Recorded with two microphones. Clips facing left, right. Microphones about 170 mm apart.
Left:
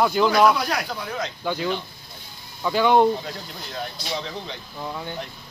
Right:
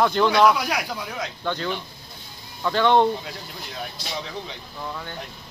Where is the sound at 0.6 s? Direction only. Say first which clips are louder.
Left 1 dB; 10° right (ahead or behind).